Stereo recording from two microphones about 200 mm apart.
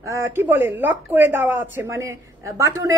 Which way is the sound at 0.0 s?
15° right (ahead or behind).